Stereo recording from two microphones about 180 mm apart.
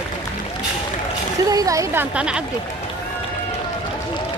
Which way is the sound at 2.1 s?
5° right (ahead or behind).